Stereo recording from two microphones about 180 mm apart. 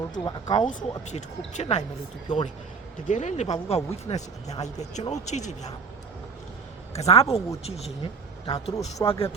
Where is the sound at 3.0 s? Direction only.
40° left (ahead or behind).